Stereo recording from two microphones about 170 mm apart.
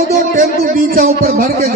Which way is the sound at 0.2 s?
55° right (ahead or behind).